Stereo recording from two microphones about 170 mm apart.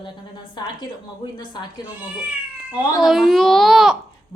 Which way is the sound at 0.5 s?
25° left (ahead or behind).